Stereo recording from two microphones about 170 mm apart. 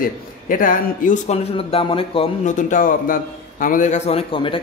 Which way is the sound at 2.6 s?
50° left (ahead or behind).